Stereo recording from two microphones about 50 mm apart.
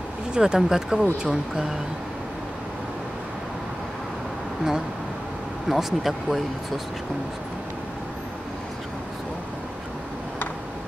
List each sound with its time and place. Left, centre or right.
0.3 s speech: centre
5.7 s speech: centre